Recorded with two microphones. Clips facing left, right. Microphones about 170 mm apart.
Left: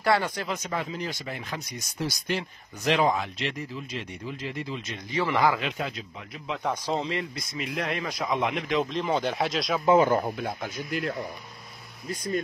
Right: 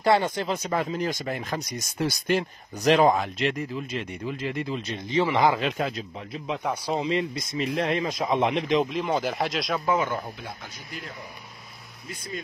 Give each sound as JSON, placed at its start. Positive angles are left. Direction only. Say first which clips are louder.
{"t": 0.0, "sound": "speech", "louder": "right 3 dB", "side_deg": -20}
{"t": 2.0, "sound": "speech", "louder": "right 5 dB", "side_deg": -55}
{"t": 4.7, "sound": "speech", "louder": "right 5 dB", "side_deg": -35}
{"t": 5.2, "sound": "speech", "louder": "right 2 dB", "side_deg": -20}
{"t": 5.6, "sound": "speech", "louder": "right 4 dB", "side_deg": -40}
{"t": 6.6, "sound": "speech", "louder": "even", "side_deg": -10}
{"t": 7.5, "sound": "speech", "louder": "right 5 dB", "side_deg": -30}
{"t": 8.9, "sound": "speech", "louder": "even", "side_deg": -5}
{"t": 10.0, "sound": "speech", "louder": "left 6 dB", "side_deg": 45}
{"t": 12.1, "sound": "speech", "louder": "left 7 dB", "side_deg": 40}